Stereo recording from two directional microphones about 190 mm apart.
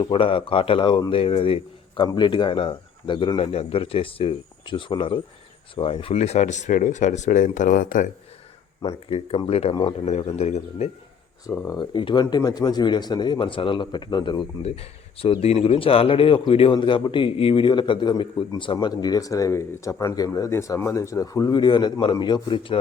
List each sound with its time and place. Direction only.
0.0 s a man's voice: 30° left (ahead or behind); by 8.1 s 45° left (ahead or behind)
8.8 s speech: 30° left (ahead or behind)
11.4 s a man's voice: 15° left (ahead or behind)